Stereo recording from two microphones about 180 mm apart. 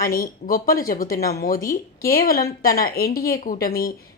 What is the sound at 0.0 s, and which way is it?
Speech, 55° left (ahead or behind).